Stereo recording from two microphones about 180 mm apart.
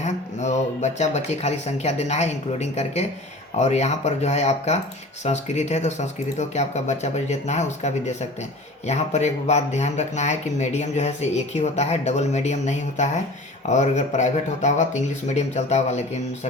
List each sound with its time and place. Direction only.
0.0 s speech: 40° left (ahead or behind)